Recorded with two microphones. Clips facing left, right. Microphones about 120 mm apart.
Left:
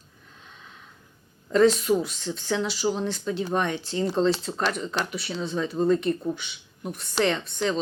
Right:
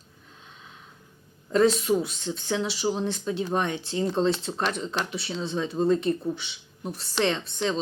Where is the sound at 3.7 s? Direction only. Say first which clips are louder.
Left 1 dB; 25° right (ahead or behind).